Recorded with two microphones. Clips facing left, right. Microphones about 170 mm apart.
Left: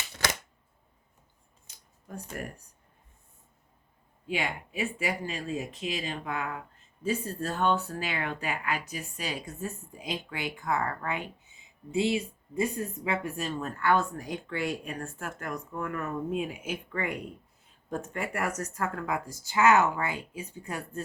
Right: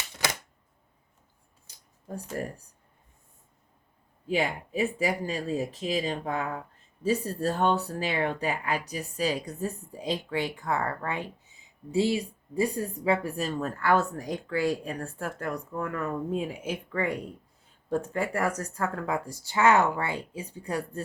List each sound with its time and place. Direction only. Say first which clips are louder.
1.6 s scissors: right 6 dB; 35° right (ahead or behind)
2.3 s speech: right 5 dB; 30° right (ahead or behind)
4.3 s speech: right 5 dB; 35° right (ahead or behind)